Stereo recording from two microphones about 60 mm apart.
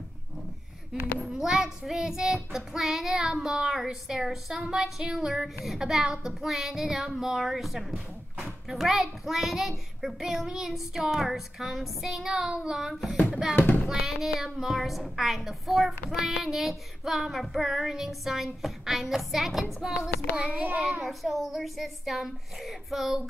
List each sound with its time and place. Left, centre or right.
1.2 s child singing: centre
5.7 s a woman's voice: centre
13.3 s child singing: centre
13.8 s a woman's voice: centre
20.3 s a child's voice: centre
21.0 s a woman's voice: centre